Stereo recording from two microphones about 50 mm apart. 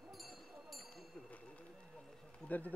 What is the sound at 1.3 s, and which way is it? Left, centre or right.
Run, left.